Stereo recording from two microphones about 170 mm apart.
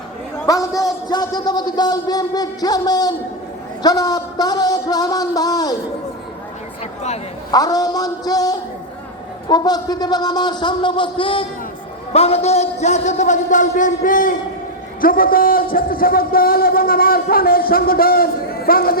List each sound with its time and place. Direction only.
0.4 s speech: 20° left (ahead or behind)
7.5 s a man's voice: 20° left (ahead or behind); by 18.9 s 60° left (ahead or behind)